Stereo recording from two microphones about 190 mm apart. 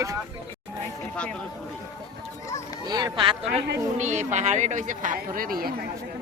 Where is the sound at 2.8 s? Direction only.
20° right (ahead or behind).